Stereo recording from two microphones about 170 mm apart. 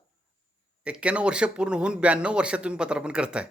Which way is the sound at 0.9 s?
5° right (ahead or behind).